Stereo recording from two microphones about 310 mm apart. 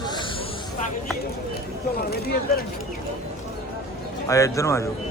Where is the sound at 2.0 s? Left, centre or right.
Left.